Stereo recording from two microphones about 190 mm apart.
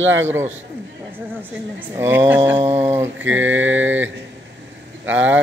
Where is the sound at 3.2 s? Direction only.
90° right.